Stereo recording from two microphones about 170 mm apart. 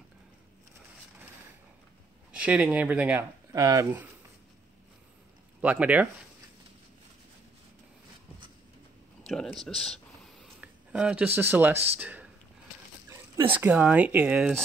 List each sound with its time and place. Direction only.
2.3 s speech: 10° right (ahead or behind)
3.5 s speech: 20° right (ahead or behind)
5.6 s speech: 10° right (ahead or behind)
9.2 s speech: centre (ahead or behind)
13.5 s speech: 10° right (ahead or behind)